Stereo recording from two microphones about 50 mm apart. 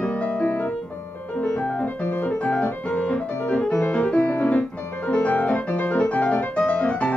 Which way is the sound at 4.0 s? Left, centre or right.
Left.